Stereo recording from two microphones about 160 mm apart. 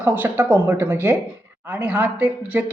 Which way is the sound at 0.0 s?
10° right (ahead or behind).